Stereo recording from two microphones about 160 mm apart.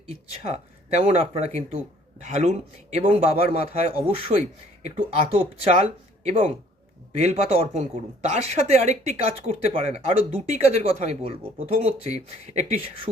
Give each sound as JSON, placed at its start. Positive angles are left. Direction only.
{"t": 0.1, "sound": "a man's voice", "side_deg": -45}
{"t": 5.6, "sound": "speech", "side_deg": -45}